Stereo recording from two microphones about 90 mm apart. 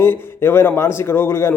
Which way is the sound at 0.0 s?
25° left (ahead or behind).